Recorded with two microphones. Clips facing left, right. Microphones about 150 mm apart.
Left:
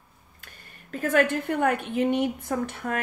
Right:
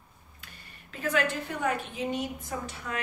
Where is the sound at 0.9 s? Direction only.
50° left (ahead or behind).